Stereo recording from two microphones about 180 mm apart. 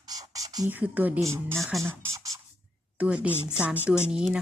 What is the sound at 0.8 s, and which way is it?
Speech, 10° right (ahead or behind).